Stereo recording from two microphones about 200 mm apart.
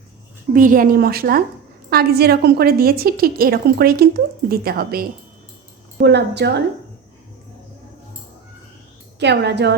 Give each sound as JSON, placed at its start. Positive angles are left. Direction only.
{"t": 0.5, "sound": "a woman's voice", "side_deg": -40}
{"t": 9.1, "sound": "a woman's voice", "side_deg": -55}